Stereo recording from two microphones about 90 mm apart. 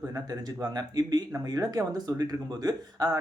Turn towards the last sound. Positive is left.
turn(degrees=-45)  # may be behind; listen again after turning